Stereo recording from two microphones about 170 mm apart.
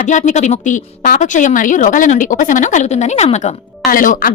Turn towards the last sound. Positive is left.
turn(degrees=55)  # may be behind; listen again after turning